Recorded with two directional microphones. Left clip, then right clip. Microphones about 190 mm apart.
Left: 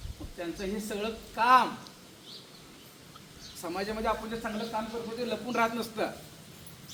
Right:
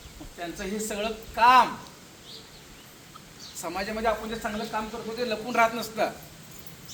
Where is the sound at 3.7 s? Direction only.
5° left (ahead or behind).